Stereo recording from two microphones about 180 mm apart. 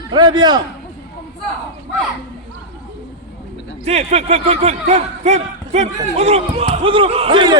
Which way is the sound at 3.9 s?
35° right (ahead or behind).